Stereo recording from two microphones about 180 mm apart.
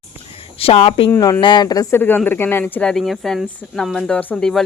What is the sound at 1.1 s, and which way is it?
Speech, 15° left (ahead or behind).